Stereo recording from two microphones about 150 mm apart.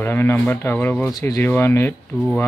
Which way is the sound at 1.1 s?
25° left (ahead or behind).